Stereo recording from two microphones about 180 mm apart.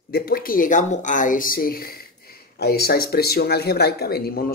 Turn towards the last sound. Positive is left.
turn(degrees=55)  # may be behind; listen again after turning